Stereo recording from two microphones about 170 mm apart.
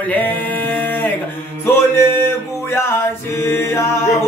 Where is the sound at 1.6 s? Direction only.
15° left (ahead or behind).